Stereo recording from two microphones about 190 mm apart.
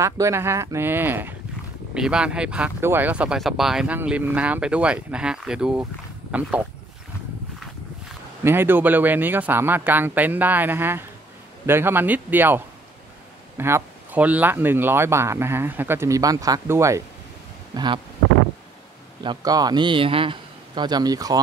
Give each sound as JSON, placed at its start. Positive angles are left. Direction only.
{"t": 0.0, "sound": "speech", "side_deg": -15}
{"t": 8.5, "sound": "a man's voice", "side_deg": -10}
{"t": 19.2, "sound": "a man's voice", "side_deg": -20}